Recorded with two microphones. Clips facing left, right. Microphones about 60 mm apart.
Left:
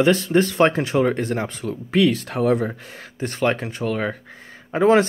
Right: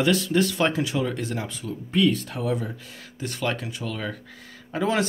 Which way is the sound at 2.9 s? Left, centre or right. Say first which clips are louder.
Left 7 dB; left.